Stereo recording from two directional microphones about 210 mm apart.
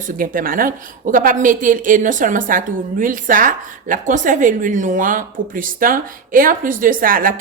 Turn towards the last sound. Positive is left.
turn(degrees=-40)  # may be behind; listen again after turning